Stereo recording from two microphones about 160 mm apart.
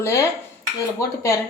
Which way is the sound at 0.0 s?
15° left (ahead or behind).